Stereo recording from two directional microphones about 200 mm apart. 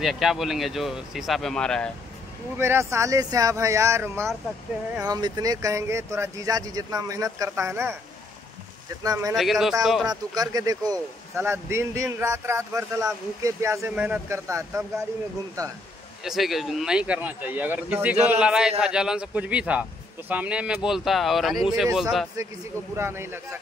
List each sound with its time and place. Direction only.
0.0 s a man's voice: centre (ahead or behind)
2.5 s speech: 10° right (ahead or behind)
9.0 s speech: 15° right (ahead or behind)
9.3 s a man's voice: centre (ahead or behind)
10.0 s speech: 20° right (ahead or behind)
16.3 s a man's voice: centre (ahead or behind)
22.9 s speech: 10° right (ahead or behind)